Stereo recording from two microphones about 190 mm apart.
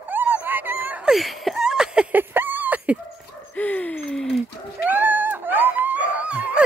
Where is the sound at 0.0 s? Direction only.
10° right (ahead or behind).